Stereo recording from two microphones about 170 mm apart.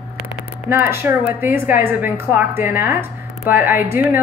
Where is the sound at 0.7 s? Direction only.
15° right (ahead or behind).